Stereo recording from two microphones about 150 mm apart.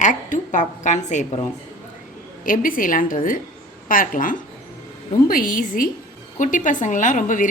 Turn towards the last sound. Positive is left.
turn(degrees=60)  # may be behind; listen again after turning